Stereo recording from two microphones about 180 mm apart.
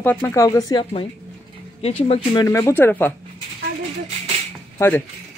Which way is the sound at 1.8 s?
35° left (ahead or behind).